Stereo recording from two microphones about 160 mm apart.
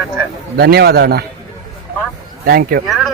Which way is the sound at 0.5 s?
80° right.